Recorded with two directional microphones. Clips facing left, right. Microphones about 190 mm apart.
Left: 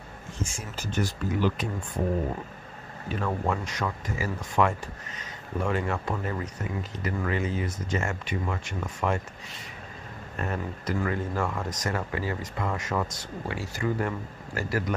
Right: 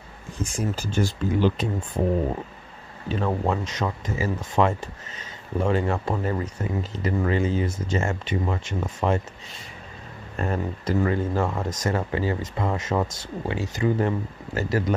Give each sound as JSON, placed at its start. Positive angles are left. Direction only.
{"t": 0.6, "sound": "speech", "side_deg": -30}
{"t": 3.1, "sound": "speech", "side_deg": -25}
{"t": 10.3, "sound": "speech", "side_deg": -30}